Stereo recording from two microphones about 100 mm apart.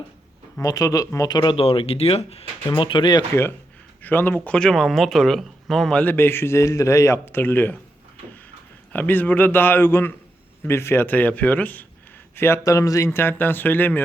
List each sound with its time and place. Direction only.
0.6 s speech: 35° left (ahead or behind)
1.3 s speech: 45° left (ahead or behind)
1.5 s speech: 70° left (ahead or behind)
2.6 s speech: 55° left (ahead or behind)
4.0 s speech: 20° left (ahead or behind); by 6.0 s centre (ahead or behind)
6.0 s a man's voice: 20° left (ahead or behind)
8.9 s a man's voice: 20° left (ahead or behind)
12.4 s speech: 25° left (ahead or behind)
13.1 s a man's voice: 20° left (ahead or behind)